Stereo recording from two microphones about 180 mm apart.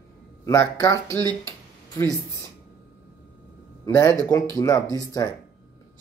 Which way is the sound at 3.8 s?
15° left (ahead or behind).